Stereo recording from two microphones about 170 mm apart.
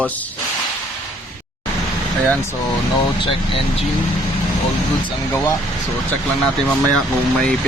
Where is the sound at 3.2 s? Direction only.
30° left (ahead or behind).